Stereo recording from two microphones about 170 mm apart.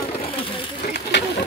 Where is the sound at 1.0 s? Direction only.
75° left (ahead or behind).